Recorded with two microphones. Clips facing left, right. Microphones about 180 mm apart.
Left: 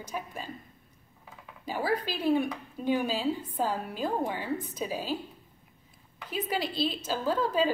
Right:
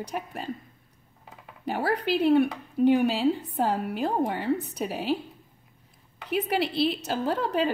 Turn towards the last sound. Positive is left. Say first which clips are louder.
# right 1 dB
turn(degrees=-65)  # may be behind; listen again after turning